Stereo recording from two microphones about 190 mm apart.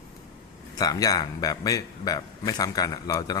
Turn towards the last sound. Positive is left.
turn(degrees=20)  # may be behind; listen again after turning